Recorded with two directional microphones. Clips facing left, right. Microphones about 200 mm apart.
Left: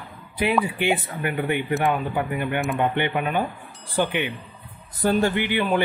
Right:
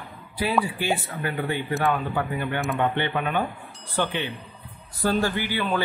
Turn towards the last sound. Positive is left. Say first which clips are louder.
# left 3 dB
turn(degrees=20)  # may be behind; listen again after turning